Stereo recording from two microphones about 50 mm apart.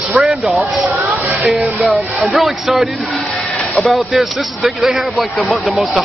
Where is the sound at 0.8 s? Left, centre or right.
Centre.